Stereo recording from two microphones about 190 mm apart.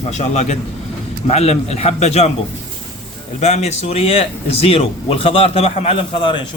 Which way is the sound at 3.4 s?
35° left (ahead or behind).